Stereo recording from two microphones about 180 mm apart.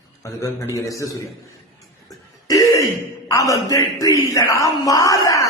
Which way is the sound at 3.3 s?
20° left (ahead or behind).